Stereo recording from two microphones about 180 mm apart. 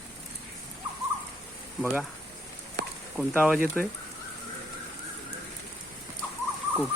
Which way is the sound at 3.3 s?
5° left (ahead or behind).